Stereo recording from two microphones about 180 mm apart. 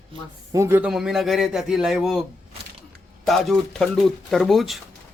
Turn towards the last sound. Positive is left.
turn(degrees=0)  # may be behind; listen again after turning